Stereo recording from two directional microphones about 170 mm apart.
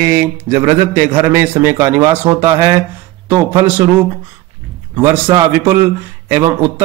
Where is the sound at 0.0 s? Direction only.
15° right (ahead or behind).